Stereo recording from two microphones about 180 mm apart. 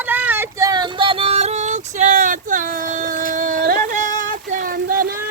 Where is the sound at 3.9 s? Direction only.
45° right (ahead or behind).